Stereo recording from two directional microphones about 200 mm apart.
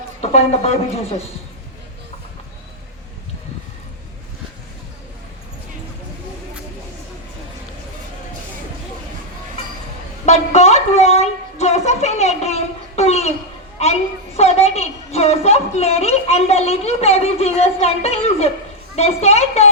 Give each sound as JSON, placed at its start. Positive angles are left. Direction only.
{"t": 0.2, "sound": "a woman's voice", "side_deg": 30}
{"t": 10.2, "sound": "a sound", "side_deg": 35}
{"t": 14.3, "sound": "a woman's voice", "side_deg": 30}